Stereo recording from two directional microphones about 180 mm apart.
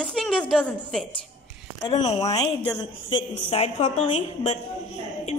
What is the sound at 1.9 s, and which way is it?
A woman's voice, 35° left (ahead or behind).